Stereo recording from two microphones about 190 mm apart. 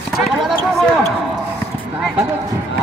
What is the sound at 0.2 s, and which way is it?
Run, centre (ahead or behind).